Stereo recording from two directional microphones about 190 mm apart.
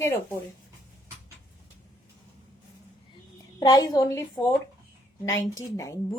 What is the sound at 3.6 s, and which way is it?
Speech, 20° left (ahead or behind).